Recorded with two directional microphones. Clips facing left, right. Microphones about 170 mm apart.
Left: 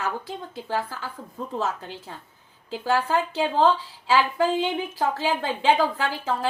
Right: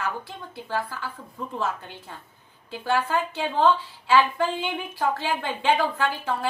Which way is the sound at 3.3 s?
35° left (ahead or behind).